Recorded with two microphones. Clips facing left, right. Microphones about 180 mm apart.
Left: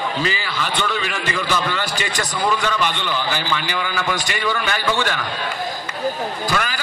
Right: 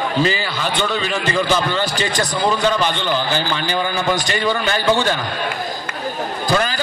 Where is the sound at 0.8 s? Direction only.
25° right (ahead or behind).